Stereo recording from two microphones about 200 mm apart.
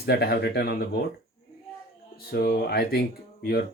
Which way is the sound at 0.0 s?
50° left (ahead or behind).